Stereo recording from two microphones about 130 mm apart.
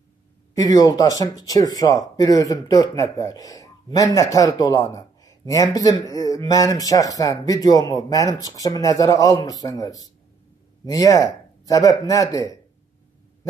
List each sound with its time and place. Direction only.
0.6 s speech: 30° left (ahead or behind)